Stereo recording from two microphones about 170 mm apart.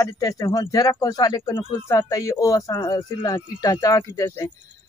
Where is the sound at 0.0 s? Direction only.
20° left (ahead or behind).